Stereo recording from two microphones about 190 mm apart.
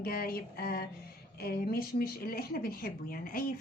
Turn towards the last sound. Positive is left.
turn(degrees=50)  # may be behind; listen again after turning